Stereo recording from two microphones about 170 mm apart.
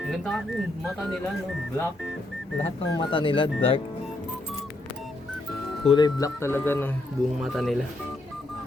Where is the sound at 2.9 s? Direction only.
30° left (ahead or behind).